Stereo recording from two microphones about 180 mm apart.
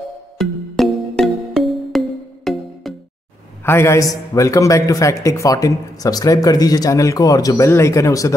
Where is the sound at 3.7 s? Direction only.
15° left (ahead or behind).